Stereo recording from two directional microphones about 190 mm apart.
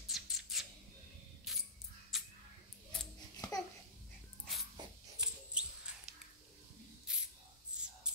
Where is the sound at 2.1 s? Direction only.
Centre (ahead or behind).